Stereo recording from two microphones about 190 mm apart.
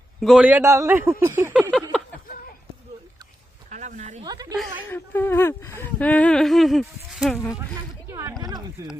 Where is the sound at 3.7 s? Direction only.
40° right (ahead or behind).